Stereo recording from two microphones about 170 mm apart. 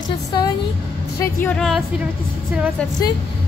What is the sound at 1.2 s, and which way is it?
Speech, 10° left (ahead or behind).